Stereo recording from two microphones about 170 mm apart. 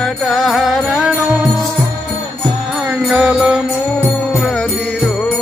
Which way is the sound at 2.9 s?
5° right (ahead or behind).